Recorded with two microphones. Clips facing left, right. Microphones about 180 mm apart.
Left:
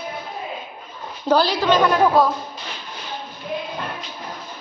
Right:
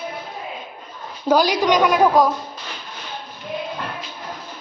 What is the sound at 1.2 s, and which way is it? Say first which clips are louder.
A woman's voice: right 1 dB; 10° right (ahead or behind).